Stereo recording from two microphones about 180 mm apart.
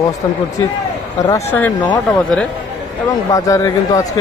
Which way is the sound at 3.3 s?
20° left (ahead or behind).